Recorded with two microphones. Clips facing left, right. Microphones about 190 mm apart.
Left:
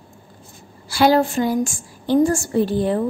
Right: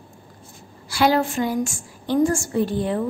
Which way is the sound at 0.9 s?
35° left (ahead or behind).